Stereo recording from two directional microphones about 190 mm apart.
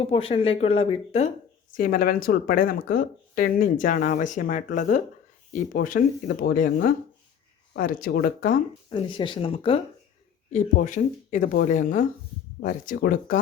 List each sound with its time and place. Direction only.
0.0 s speech: 30° left (ahead or behind)
1.7 s speech: 50° left (ahead or behind)
6.2 s speech: 65° left (ahead or behind)
6.6 s speech: 50° left (ahead or behind)
8.9 s speech: 25° left (ahead or behind)
10.5 s speech: 40° left (ahead or behind)